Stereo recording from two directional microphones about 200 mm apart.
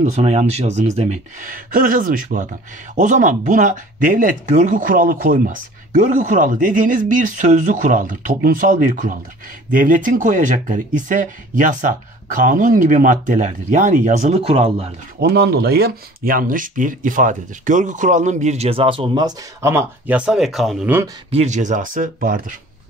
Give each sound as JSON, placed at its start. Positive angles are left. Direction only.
{"t": 0.0, "sound": "speech", "side_deg": -30}
{"t": 15.1, "sound": "speech", "side_deg": -55}
{"t": 21.3, "sound": "speech", "side_deg": -35}